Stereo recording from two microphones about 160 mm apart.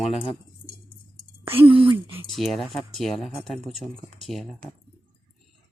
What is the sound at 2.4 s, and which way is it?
Speech, centre (ahead or behind).